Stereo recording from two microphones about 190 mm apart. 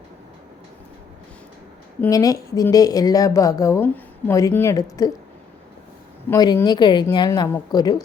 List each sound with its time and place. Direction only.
2.0 s a woman's voice: 20° left (ahead or behind)
6.3 s a woman's voice: 20° left (ahead or behind)